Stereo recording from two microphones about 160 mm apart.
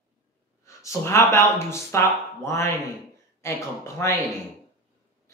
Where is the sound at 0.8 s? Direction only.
15° left (ahead or behind).